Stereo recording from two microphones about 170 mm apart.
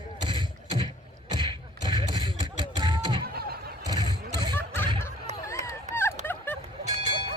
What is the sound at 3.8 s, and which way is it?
Vehicle, 25° right (ahead or behind).